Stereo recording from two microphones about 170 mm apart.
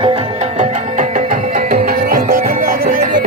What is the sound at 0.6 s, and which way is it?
Music, 55° right (ahead or behind).